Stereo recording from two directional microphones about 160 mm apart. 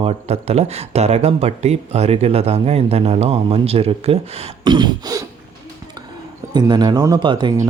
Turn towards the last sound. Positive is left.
turn(degrees=-30)  # may be behind; listen again after turning